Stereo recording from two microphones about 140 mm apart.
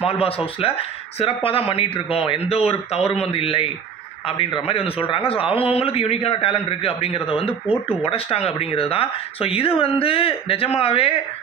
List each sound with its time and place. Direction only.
0.0 s a man's voice: 45° left (ahead or behind)